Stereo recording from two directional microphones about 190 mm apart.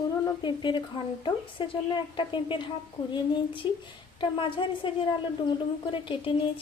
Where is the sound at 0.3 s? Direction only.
25° left (ahead or behind).